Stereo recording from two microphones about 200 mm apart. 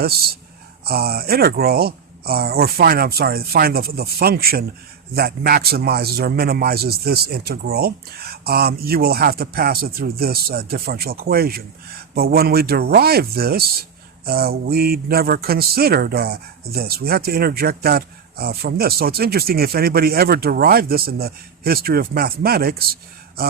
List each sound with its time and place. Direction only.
0.0 s speech: 50° right (ahead or behind)